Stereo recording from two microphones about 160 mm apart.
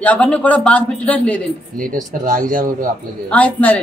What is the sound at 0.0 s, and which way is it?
Speech, 10° left (ahead or behind).